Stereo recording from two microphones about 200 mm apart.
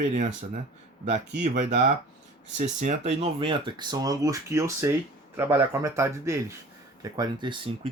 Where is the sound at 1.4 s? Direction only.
40° right (ahead or behind).